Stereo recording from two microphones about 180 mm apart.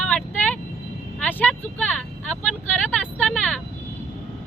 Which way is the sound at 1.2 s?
10° left (ahead or behind).